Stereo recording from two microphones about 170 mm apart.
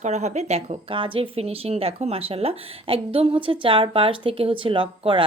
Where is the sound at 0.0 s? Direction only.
40° right (ahead or behind).